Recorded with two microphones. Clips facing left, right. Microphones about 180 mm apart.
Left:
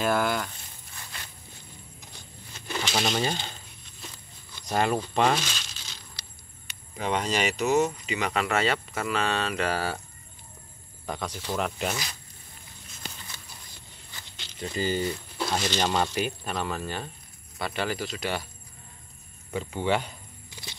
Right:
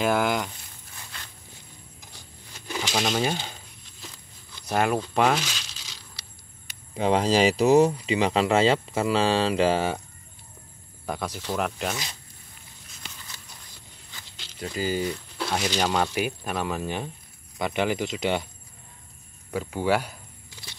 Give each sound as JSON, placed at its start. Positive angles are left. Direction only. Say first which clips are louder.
{"t": 0.0, "sound": "speech", "louder": "right 2 dB", "side_deg": -15}
{"t": 2.7, "sound": "a sound", "louder": "right 1 dB", "side_deg": -10}
{"t": 4.6, "sound": "speech", "louder": "right 2 dB", "side_deg": -5}
{"t": 7.0, "sound": "speech", "louder": "right 6 dB", "side_deg": -30}
{"t": 11.1, "sound": "speech", "louder": "right 2 dB", "side_deg": -10}
{"t": 14.6, "sound": "speech", "louder": "right 1 dB", "side_deg": -5}
{"t": 19.5, "sound": "speech", "louder": "right 2 dB", "side_deg": -5}